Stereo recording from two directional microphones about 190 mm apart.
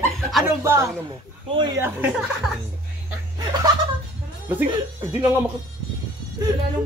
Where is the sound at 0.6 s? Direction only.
15° right (ahead or behind).